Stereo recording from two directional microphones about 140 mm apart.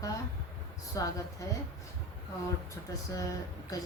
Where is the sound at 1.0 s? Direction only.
25° left (ahead or behind).